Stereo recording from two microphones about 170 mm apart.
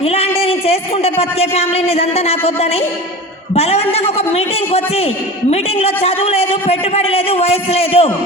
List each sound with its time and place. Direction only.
0.0 s a man's voice: 35° left (ahead or behind)